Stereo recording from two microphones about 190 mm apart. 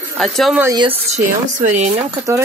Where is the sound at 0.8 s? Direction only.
30° right (ahead or behind).